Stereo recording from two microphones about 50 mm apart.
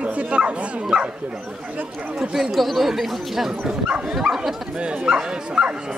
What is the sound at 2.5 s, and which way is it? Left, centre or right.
Speech, centre.